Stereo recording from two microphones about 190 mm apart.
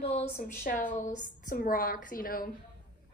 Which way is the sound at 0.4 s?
45° left (ahead or behind).